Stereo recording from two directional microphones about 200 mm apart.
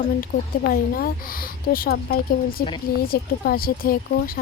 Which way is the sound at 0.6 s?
50° left (ahead or behind).